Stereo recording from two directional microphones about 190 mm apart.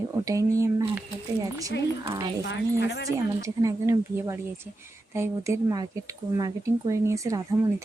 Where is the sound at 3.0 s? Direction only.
15° right (ahead or behind).